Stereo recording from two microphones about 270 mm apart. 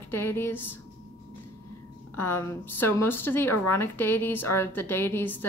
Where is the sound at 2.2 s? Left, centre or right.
Centre.